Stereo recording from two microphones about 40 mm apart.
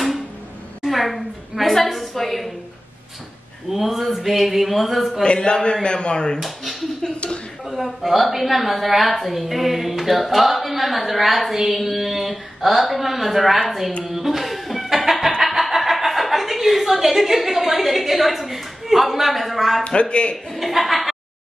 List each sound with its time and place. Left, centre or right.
0.8 s a woman's voice: centre
3.7 s a woman's voice: centre
5.2 s a man's voice: left
6.4 s a sound: centre
7.7 s a woman's voice: centre
14.0 s music: centre
15.4 s speech: centre
19.9 s a man's voice: left
20.5 s a woman's voice: centre